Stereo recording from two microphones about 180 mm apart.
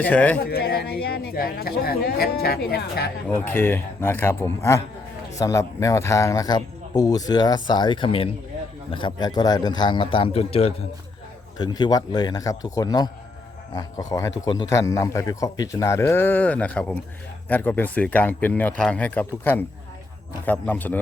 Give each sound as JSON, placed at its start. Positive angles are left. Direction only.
{"t": 0.0, "sound": "speech", "side_deg": 5}
{"t": 0.3, "sound": "speech", "side_deg": 60}
{"t": 3.2, "sound": "speech", "side_deg": 10}
{"t": 11.5, "sound": "speech", "side_deg": 25}